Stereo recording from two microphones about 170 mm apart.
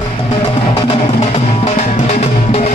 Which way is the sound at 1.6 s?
40° left (ahead or behind).